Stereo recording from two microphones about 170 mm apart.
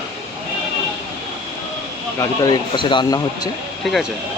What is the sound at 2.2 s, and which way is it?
Speech, 25° left (ahead or behind).